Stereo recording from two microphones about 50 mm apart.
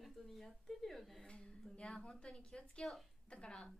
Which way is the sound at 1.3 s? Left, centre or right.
Centre.